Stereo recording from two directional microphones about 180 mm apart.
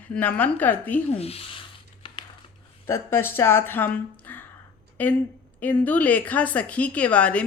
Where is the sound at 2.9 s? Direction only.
10° left (ahead or behind).